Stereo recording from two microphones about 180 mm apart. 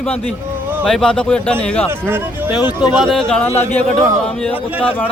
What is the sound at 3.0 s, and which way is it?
Speech, centre (ahead or behind).